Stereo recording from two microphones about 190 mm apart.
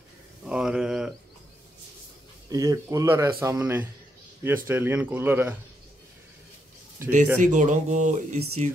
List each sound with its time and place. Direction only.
0.5 s a sound: 5° right (ahead or behind)
2.5 s speech: 20° right (ahead or behind)
7.1 s speech: 40° right (ahead or behind)